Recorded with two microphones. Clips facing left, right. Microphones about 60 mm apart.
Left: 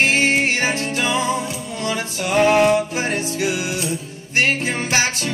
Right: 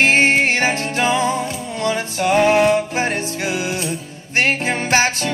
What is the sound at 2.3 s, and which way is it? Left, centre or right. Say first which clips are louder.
Music: even; right.